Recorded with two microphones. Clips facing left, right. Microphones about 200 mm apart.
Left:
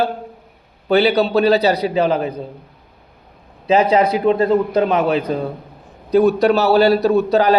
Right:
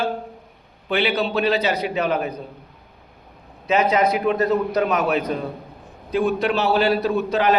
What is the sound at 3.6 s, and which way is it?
A man's voice, 30° left (ahead or behind).